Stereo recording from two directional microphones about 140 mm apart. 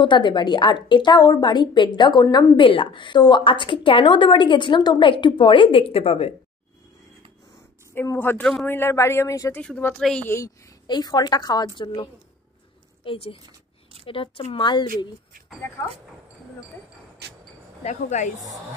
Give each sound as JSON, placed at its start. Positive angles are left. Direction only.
{"t": 0.0, "sound": "a woman's voice", "side_deg": 35}
{"t": 7.9, "sound": "a woman's voice", "side_deg": 15}
{"t": 10.9, "sound": "a woman's voice", "side_deg": 30}
{"t": 17.8, "sound": "speech", "side_deg": 60}